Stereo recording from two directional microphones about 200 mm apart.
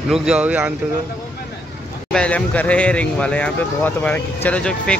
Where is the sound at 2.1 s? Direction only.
5° left (ahead or behind).